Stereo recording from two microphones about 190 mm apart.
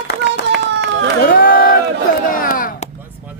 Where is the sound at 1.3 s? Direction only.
50° left (ahead or behind).